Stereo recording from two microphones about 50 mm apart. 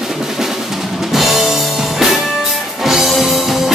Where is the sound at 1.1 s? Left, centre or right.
Centre.